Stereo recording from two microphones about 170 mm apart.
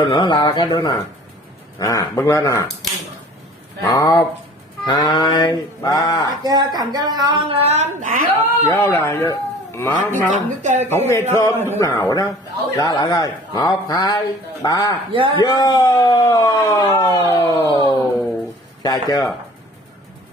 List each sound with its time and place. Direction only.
0.0 s a man's voice: 30° left (ahead or behind)
3.8 s a man's voice: 20° left (ahead or behind)
6.4 s a woman's voice: 25° right (ahead or behind); by 8.3 s 55° right (ahead or behind)
8.6 s speech: 15° left (ahead or behind)
10.3 s speech: 45° right (ahead or behind)
10.9 s a man's voice: 15° left (ahead or behind)
15.1 s a man's voice: 30° right (ahead or behind)
15.4 s a man's voice: 25° left (ahead or behind)